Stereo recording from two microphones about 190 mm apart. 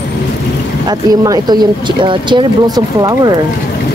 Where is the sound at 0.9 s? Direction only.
20° right (ahead or behind).